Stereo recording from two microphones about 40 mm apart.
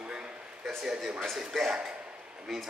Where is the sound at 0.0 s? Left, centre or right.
Right.